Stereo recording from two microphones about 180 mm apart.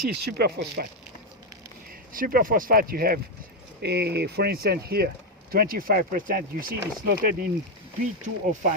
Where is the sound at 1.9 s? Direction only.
55° right (ahead or behind).